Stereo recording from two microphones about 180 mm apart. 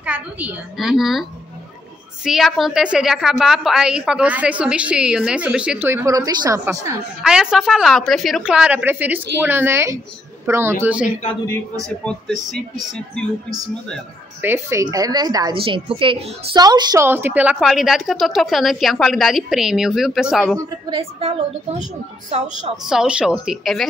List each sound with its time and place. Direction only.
0.0 s a woman's voice: 10° right (ahead or behind)
2.2 s a woman's voice: centre (ahead or behind); by 7.0 s 15° right (ahead or behind)
7.2 s a woman's voice: 5° right (ahead or behind)
12.0 s a woman's voice: 5° left (ahead or behind)
14.4 s a woman's voice: 15° right (ahead or behind)
21.0 s a woman's voice: 35° right (ahead or behind)
22.8 s a woman's voice: 5° right (ahead or behind)